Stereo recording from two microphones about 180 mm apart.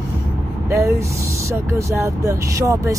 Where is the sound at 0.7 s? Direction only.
15° right (ahead or behind).